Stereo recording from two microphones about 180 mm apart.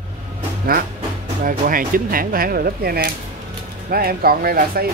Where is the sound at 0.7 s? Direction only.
55° right (ahead or behind).